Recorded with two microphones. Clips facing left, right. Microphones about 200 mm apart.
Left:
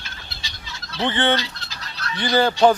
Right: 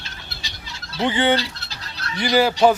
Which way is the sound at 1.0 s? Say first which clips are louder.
Right 2 dB; 10° right (ahead or behind).